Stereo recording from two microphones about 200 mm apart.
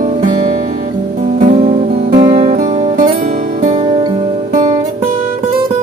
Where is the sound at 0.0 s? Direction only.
40° right (ahead or behind).